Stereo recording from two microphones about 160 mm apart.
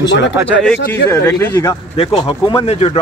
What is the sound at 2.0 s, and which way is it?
A man's voice, 30° left (ahead or behind).